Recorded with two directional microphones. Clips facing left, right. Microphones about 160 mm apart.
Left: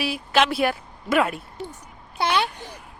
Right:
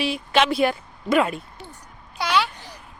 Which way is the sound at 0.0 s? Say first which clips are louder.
Right 1 dB; 5° left (ahead or behind).